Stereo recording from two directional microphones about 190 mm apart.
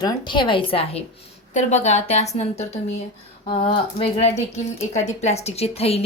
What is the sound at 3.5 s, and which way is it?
Speech, 30° left (ahead or behind).